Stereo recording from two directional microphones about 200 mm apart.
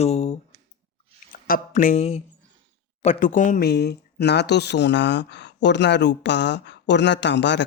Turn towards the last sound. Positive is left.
turn(degrees=60)  # may be behind; listen again after turning